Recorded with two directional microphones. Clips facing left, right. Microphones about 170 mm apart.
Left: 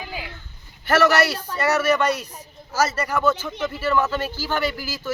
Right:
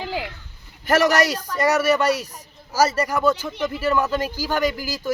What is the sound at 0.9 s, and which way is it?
Speech, 15° right (ahead or behind).